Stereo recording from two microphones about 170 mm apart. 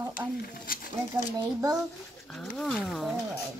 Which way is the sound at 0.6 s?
55° left (ahead or behind).